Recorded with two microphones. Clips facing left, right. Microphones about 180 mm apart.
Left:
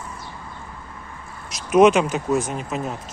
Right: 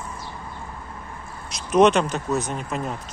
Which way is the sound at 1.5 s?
5° left (ahead or behind).